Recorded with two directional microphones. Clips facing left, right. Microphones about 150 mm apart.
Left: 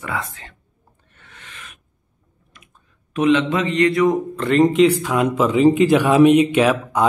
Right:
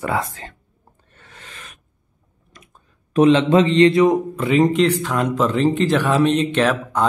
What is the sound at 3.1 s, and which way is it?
A man's voice, 35° right (ahead or behind).